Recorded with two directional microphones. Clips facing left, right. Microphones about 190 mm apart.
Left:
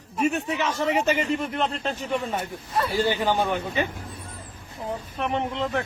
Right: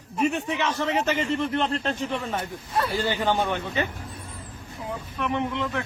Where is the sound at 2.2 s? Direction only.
20° left (ahead or behind).